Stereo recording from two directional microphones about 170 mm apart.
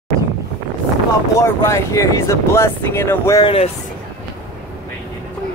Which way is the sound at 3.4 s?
35° left (ahead or behind).